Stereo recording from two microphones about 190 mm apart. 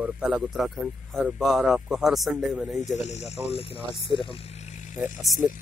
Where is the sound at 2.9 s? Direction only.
35° left (ahead or behind).